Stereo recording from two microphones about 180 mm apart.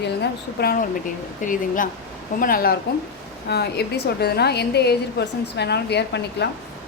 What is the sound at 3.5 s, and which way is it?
A woman's voice, 65° left (ahead or behind).